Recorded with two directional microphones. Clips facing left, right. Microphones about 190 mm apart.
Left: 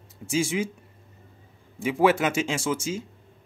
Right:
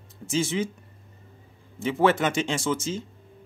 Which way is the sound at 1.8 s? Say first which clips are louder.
Left 1 dB; 10° left (ahead or behind).